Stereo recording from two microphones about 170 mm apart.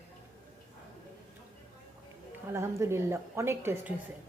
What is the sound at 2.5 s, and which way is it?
A woman's voice, 15° right (ahead or behind).